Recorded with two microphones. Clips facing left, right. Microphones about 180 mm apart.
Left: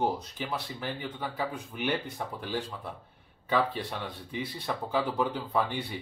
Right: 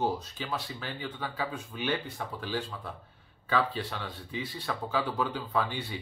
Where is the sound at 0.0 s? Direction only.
15° left (ahead or behind).